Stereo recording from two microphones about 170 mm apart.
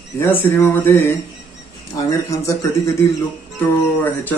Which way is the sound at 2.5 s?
15° left (ahead or behind).